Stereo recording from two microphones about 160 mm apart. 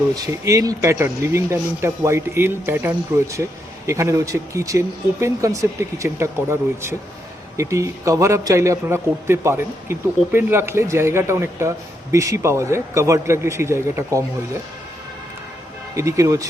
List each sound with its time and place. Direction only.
0.1 s a man's voice: 20° right (ahead or behind)
16.0 s speech: 20° right (ahead or behind)